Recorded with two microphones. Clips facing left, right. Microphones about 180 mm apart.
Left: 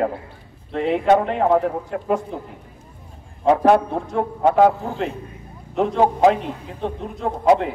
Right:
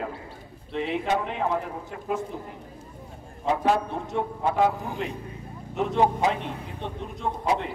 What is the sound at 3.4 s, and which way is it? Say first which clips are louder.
Speech: left 8 dB; 60° left (ahead or behind).